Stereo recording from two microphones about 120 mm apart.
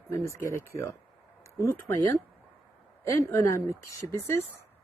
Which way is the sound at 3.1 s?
25° left (ahead or behind).